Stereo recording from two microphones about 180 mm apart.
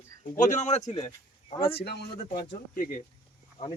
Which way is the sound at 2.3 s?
45° left (ahead or behind).